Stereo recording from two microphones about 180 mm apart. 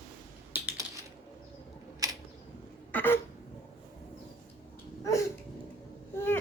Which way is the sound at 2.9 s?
10° left (ahead or behind).